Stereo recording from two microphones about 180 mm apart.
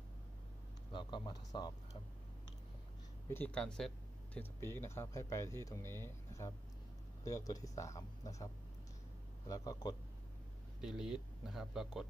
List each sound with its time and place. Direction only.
0.9 s speech: 25° left (ahead or behind)
3.3 s speech: 10° left (ahead or behind)
9.5 s speech: 20° left (ahead or behind)
10.8 s speech: 5° right (ahead or behind)